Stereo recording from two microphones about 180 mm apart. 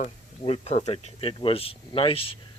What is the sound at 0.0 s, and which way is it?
Speech, 35° left (ahead or behind).